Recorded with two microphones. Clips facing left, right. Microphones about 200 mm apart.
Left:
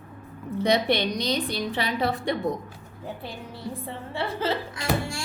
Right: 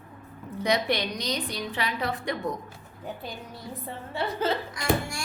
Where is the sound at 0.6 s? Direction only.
30° left (ahead or behind).